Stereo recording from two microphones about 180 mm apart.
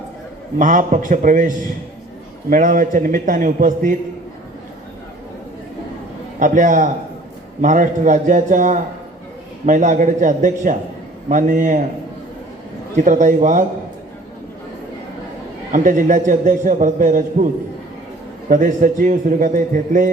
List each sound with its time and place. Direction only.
0.6 s a man's voice: 45° right (ahead or behind)
6.4 s a man's voice: 45° right (ahead or behind)
13.0 s a man's voice: 45° right (ahead or behind)
15.7 s a man's voice: 45° right (ahead or behind)